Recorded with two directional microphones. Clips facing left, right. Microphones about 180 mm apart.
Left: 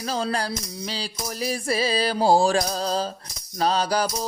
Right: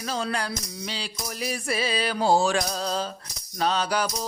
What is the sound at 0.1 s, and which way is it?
Music, 35° left (ahead or behind).